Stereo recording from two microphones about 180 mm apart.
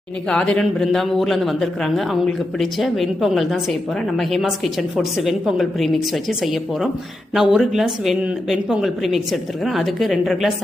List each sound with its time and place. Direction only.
0.3 s a man's voice: 5° left (ahead or behind)